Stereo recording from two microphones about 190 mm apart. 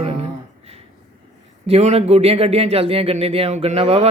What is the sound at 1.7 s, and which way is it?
Speech, 35° right (ahead or behind).